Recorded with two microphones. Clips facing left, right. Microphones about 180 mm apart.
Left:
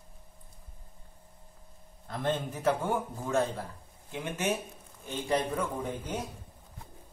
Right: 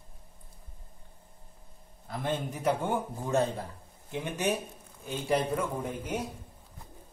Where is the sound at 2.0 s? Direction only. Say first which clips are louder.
Left 1 dB; 10° right (ahead or behind).